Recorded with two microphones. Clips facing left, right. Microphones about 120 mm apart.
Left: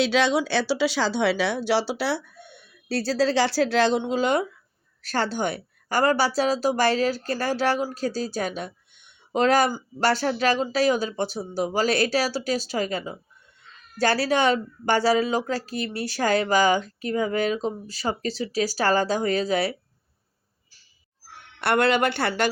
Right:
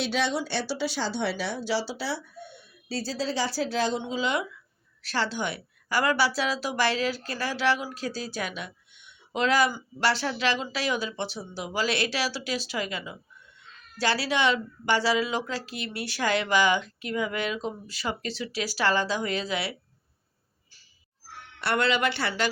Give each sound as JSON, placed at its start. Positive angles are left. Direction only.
{"t": 0.0, "sound": "a woman's voice", "side_deg": 90}
{"t": 21.6, "sound": "a woman's voice", "side_deg": 55}